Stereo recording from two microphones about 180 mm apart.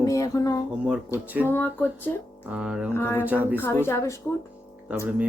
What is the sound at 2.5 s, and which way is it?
Speech, 5° right (ahead or behind).